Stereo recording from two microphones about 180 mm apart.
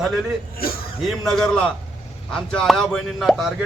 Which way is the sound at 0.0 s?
Centre (ahead or behind).